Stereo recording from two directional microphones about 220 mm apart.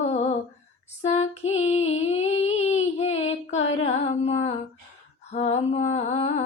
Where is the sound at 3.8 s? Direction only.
30° left (ahead or behind).